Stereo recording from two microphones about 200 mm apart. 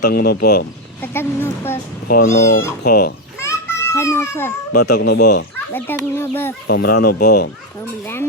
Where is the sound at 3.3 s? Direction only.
15° left (ahead or behind).